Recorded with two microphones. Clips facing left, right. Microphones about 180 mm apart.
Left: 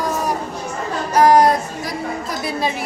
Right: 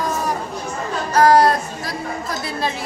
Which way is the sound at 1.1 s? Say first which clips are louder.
Left 1 dB; 15° left (ahead or behind).